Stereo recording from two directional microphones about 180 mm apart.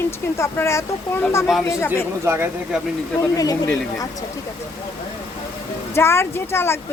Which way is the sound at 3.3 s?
20° left (ahead or behind).